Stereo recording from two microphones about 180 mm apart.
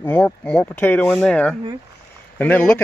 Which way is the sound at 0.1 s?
5° left (ahead or behind).